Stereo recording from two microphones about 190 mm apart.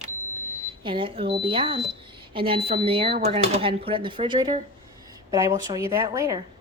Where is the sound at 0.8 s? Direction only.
25° right (ahead or behind).